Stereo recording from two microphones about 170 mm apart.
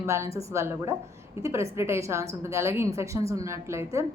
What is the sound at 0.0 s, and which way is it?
A woman's voice, 15° right (ahead or behind).